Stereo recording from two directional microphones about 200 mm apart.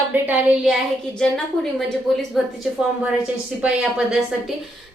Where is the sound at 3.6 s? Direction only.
5° right (ahead or behind).